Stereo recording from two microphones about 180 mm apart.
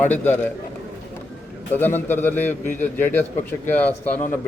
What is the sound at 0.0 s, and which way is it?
Speech, 10° left (ahead or behind).